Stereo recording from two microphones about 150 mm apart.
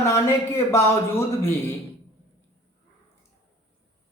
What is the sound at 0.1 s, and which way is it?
Speech, 20° left (ahead or behind).